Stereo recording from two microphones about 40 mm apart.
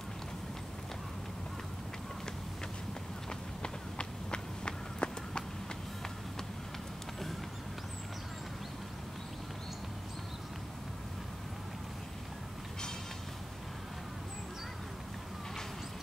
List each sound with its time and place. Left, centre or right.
3.3 s run: left